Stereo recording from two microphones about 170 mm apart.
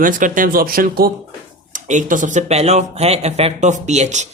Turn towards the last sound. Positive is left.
turn(degrees=-45)  # may be behind; listen again after turning